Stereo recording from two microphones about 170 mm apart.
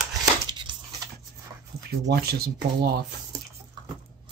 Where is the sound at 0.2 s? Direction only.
25° right (ahead or behind).